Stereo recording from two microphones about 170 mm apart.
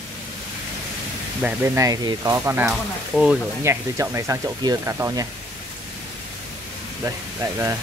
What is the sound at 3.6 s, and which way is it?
Speech, 15° right (ahead or behind).